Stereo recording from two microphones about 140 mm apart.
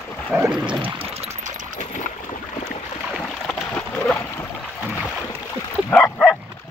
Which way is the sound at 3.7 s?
10° left (ahead or behind).